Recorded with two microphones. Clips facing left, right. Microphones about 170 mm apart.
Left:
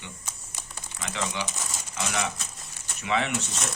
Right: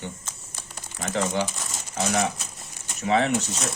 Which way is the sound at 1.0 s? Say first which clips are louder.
Right 7 dB; 45° right (ahead or behind).